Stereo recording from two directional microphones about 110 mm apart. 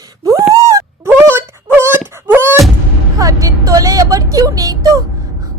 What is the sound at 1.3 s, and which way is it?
Wail, 20° right (ahead or behind).